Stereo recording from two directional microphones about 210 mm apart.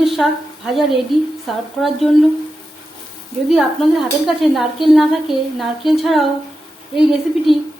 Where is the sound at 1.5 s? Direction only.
Centre (ahead or behind).